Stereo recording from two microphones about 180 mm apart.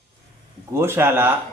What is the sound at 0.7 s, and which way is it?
Speech, 15° right (ahead or behind).